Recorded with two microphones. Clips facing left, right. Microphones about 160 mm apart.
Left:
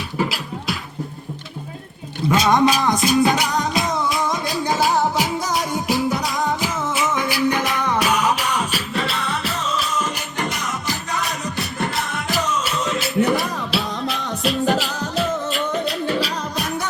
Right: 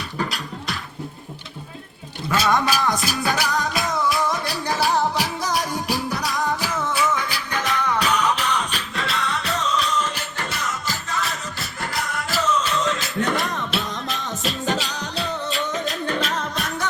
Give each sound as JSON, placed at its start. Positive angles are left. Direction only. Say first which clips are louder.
{"t": 0.2, "sound": "music", "louder": "left 4 dB", "side_deg": 5}
{"t": 2.3, "sound": "music", "louder": "left 4 dB", "side_deg": 20}
{"t": 13.2, "sound": "music", "louder": "left 3 dB", "side_deg": 0}
{"t": 16.1, "sound": "music", "louder": "left 2 dB", "side_deg": 0}